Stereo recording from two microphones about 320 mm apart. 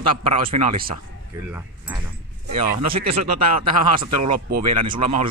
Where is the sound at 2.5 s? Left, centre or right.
Right.